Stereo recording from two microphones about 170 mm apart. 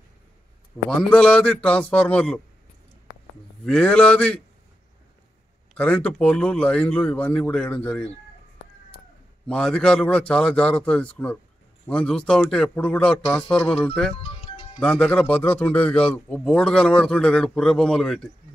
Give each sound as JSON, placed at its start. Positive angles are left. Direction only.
{"t": 0.8, "sound": "speech", "side_deg": 5}
{"t": 3.6, "sound": "a man's voice", "side_deg": 5}
{"t": 5.8, "sound": "speech", "side_deg": 10}
{"t": 9.5, "sound": "a man's voice", "side_deg": 5}
{"t": 14.2, "sound": "music", "side_deg": 35}
{"t": 14.8, "sound": "a man's voice", "side_deg": 5}